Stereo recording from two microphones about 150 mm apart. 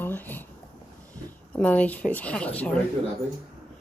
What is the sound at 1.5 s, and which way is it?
Speech, 10° left (ahead or behind).